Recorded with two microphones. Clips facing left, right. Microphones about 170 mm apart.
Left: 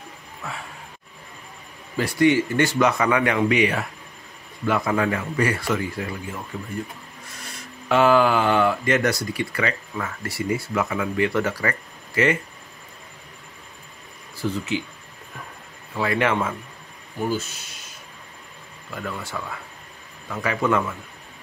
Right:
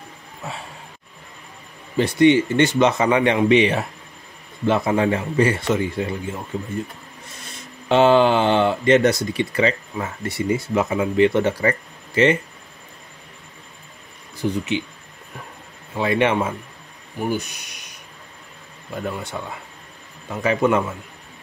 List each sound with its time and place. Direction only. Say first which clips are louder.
0.4 s speech: right 2 dB; 25° right (ahead or behind)
2.0 s speech: right 4 dB; 20° right (ahead or behind)
7.4 s speech: right 3 dB; 25° right (ahead or behind)
14.3 s speech: right 3 dB; 20° right (ahead or behind)
15.9 s speech: right 3 dB; 20° right (ahead or behind)
18.9 s speech: right 3 dB; 20° right (ahead or behind)